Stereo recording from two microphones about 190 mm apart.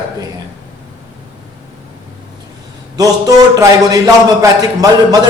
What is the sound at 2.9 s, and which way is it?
A man's voice, 20° right (ahead or behind).